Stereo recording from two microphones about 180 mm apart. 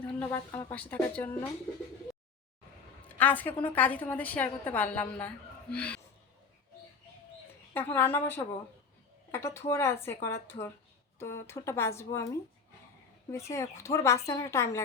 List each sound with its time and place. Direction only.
0.2 s a woman's voice: 15° left (ahead or behind)
3.2 s a woman's voice: 10° left (ahead or behind)
7.7 s a woman's voice: 10° left (ahead or behind)